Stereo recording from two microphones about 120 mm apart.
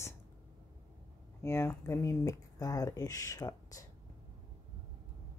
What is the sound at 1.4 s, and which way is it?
Speech, 20° left (ahead or behind).